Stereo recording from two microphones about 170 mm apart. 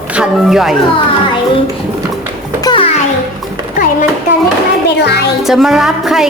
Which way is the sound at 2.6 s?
30° left (ahead or behind).